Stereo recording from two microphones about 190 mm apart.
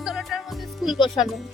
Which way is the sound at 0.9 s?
25° left (ahead or behind).